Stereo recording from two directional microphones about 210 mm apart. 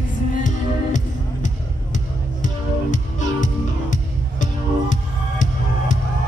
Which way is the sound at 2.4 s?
35° left (ahead or behind).